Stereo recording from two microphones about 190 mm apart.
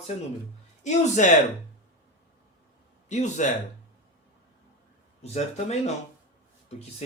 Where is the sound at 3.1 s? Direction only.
40° left (ahead or behind).